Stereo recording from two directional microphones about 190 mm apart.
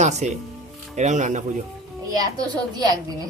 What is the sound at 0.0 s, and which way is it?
Speech, 35° right (ahead or behind).